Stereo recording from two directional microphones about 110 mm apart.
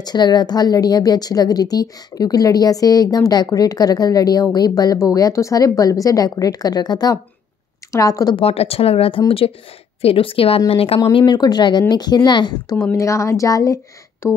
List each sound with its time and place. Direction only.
0.0 s a woman's voice: 40° left (ahead or behind)
8.4 s speech: 65° left (ahead or behind)
11.0 s a woman's voice: 40° left (ahead or behind)
12.8 s speech: 25° left (ahead or behind)